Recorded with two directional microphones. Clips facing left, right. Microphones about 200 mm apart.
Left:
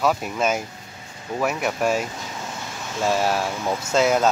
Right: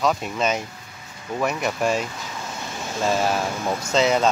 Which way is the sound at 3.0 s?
Centre (ahead or behind).